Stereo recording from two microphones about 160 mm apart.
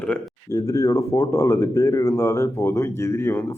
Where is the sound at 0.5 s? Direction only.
20° left (ahead or behind).